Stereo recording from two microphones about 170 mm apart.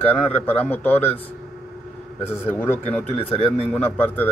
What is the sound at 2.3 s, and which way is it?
Speech, 10° left (ahead or behind).